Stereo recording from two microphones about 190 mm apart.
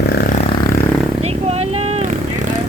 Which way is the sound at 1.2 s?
35° right (ahead or behind).